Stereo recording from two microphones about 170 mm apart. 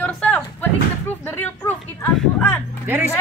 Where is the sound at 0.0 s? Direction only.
10° left (ahead or behind).